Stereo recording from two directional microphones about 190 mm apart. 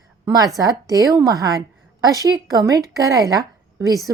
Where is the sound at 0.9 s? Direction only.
20° right (ahead or behind).